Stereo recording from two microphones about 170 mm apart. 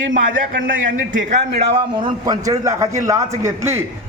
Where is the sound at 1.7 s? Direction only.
30° right (ahead or behind).